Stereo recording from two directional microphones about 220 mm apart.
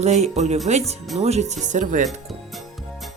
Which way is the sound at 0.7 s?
30° right (ahead or behind).